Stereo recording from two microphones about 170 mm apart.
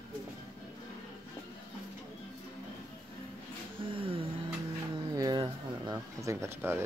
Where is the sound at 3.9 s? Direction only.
30° right (ahead or behind).